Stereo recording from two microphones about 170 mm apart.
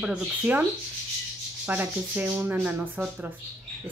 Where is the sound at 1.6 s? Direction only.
10° right (ahead or behind).